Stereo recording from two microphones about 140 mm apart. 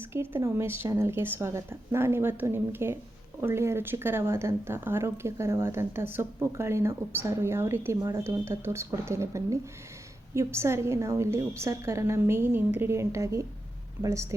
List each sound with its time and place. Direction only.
0.0 s a woman's voice: 15° right (ahead or behind)